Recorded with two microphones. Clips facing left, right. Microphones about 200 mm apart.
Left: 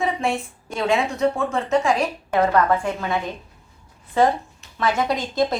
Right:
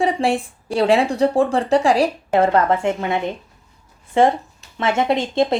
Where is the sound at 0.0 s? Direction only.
30° right (ahead or behind).